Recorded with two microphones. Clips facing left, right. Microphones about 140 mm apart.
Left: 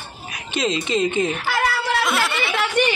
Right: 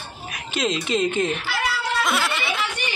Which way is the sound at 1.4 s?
55° left (ahead or behind).